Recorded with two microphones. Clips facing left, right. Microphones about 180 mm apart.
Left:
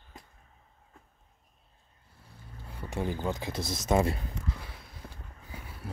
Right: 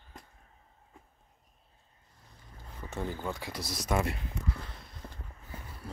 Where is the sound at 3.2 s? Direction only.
20° left (ahead or behind).